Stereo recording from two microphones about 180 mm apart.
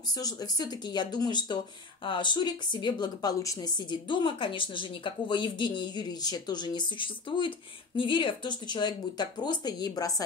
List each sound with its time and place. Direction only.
0.2 s speech: 20° left (ahead or behind)